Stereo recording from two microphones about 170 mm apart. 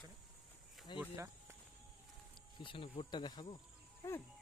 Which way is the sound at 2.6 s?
30° left (ahead or behind).